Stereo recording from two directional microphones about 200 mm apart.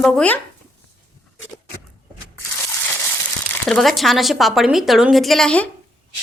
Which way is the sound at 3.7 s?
Centre (ahead or behind).